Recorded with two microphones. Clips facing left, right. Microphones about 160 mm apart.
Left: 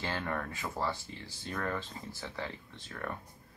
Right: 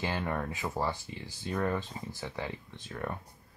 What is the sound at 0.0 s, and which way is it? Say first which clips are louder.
Speech: right 3 dB; 15° right (ahead or behind).